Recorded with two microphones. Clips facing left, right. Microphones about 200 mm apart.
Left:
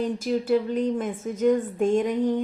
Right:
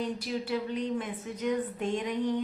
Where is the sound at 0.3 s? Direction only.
45° left (ahead or behind).